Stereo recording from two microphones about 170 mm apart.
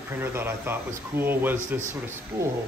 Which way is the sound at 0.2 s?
15° right (ahead or behind).